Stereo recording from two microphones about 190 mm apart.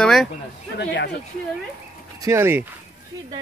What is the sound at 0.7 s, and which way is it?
Speech, 65° left (ahead or behind).